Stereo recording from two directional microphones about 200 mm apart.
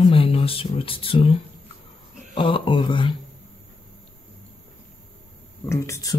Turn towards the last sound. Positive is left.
turn(degrees=15)  # may be behind; listen again after turning